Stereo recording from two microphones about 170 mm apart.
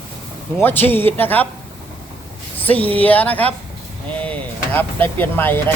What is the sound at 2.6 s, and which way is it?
A man's voice, 10° left (ahead or behind).